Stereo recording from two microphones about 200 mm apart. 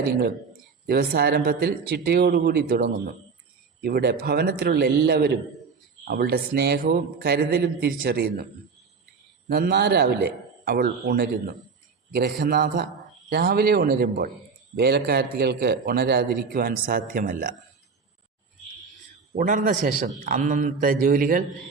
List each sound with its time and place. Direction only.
0.0 s a man's voice: 50° right (ahead or behind)
9.5 s a man's voice: 55° right (ahead or behind)
19.4 s a man's voice: 40° right (ahead or behind)